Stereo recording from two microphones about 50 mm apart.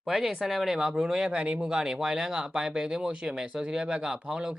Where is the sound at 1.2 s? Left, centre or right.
Right.